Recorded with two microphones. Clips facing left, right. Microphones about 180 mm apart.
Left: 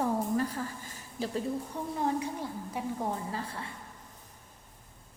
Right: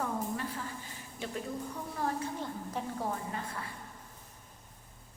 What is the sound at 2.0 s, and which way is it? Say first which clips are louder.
A woman's voice: left 3 dB; 15° left (ahead or behind).